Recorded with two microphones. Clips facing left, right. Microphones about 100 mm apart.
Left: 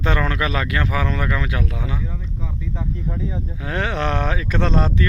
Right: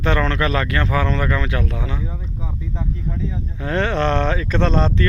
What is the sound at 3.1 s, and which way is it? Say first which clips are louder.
Speech: even; 10° left (ahead or behind).